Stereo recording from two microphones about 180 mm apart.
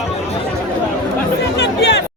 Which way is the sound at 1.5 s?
70° left (ahead or behind).